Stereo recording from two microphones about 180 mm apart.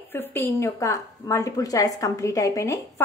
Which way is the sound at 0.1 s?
10° left (ahead or behind).